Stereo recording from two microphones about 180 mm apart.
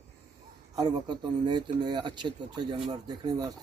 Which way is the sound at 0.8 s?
20° right (ahead or behind).